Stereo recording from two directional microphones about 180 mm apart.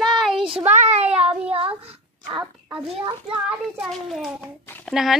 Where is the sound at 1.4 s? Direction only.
30° right (ahead or behind).